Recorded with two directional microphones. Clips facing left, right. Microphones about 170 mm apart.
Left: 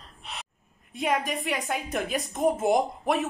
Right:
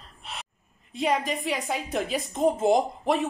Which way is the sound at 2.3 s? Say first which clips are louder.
Right 2 dB; 25° right (ahead or behind).